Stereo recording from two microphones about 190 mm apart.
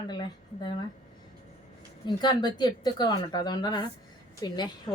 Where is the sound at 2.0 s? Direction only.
25° left (ahead or behind).